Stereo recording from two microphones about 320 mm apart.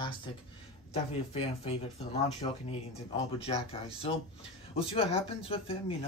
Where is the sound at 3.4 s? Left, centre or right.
Centre.